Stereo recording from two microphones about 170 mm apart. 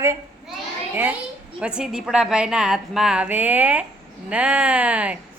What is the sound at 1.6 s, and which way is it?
A woman's voice, 5° right (ahead or behind).